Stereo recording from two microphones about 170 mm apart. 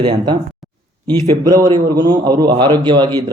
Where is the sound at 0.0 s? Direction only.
25° right (ahead or behind).